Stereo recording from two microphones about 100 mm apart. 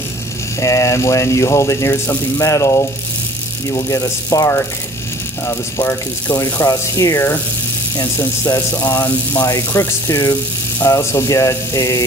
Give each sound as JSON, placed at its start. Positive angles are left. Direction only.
{"t": 0.6, "sound": "speech", "side_deg": 30}
{"t": 5.4, "sound": "speech", "side_deg": 25}
{"t": 6.4, "sound": "speech", "side_deg": 35}
{"t": 8.5, "sound": "speech", "side_deg": 15}
{"t": 9.8, "sound": "speech", "side_deg": 30}